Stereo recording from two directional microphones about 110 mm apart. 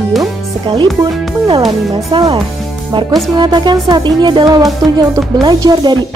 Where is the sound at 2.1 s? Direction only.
45° right (ahead or behind).